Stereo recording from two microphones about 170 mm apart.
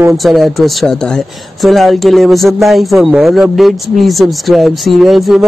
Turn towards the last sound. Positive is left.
turn(degrees=0)  # may be behind; listen again after turning